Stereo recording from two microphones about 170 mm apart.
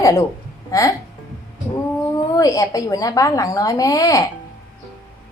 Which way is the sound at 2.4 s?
20° left (ahead or behind).